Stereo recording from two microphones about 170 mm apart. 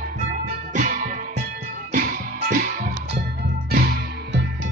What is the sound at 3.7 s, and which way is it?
Music, 65° right (ahead or behind).